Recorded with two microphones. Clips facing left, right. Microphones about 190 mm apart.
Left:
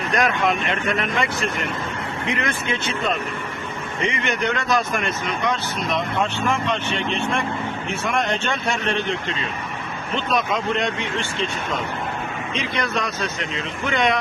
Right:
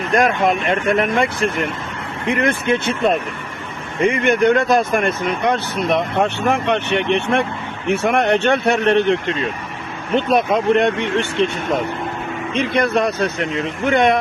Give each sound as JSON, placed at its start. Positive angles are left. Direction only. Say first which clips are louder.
{"t": 0.1, "sound": "speech", "louder": "right 5 dB", "side_deg": -50}
{"t": 12.5, "sound": "speech", "louder": "right 8 dB", "side_deg": -55}